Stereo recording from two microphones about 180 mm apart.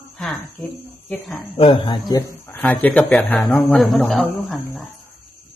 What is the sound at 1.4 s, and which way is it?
Speech, 30° left (ahead or behind).